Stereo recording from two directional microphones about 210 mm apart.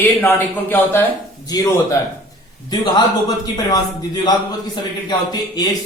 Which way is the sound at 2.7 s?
20° left (ahead or behind).